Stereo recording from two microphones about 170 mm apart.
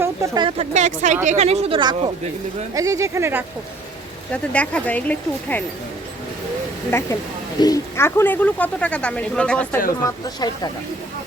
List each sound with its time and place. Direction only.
0.0 s speech: 15° right (ahead or behind)
0.4 s speech: 40° right (ahead or behind); by 3.4 s 15° right (ahead or behind)
4.3 s a man's voice: 10° left (ahead or behind)
6.9 s a man's voice: 15° left (ahead or behind)
10.0 s speech: 25° left (ahead or behind)